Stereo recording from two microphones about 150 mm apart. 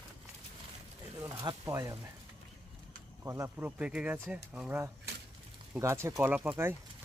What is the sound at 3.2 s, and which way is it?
Speech, 20° right (ahead or behind).